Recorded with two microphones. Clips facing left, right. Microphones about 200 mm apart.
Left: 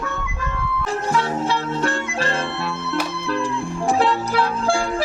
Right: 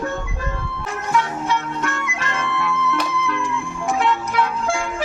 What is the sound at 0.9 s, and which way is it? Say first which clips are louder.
Music: even; 30° left (ahead or behind).